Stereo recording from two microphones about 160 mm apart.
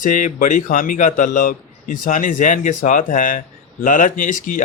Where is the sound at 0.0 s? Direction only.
55° left (ahead or behind).